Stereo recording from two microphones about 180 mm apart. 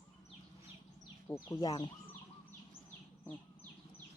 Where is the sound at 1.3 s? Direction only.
10° left (ahead or behind).